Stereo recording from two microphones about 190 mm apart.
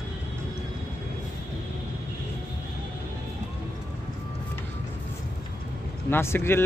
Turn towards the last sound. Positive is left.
turn(degrees=15)  # may be behind; listen again after turning